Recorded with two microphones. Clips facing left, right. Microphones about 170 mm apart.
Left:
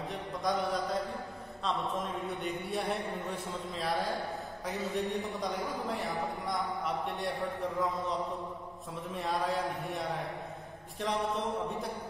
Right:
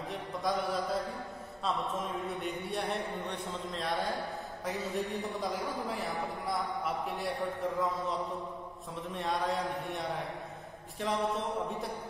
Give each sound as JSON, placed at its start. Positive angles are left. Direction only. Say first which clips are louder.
{"t": 0.1, "sound": "a man's voice", "louder": "even", "side_deg": 0}
{"t": 2.2, "sound": "a man's voice", "louder": "even", "side_deg": 0}